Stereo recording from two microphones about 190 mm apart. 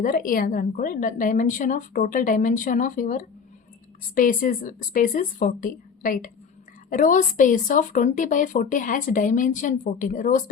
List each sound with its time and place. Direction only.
0.0 s a woman's voice: 45° left (ahead or behind)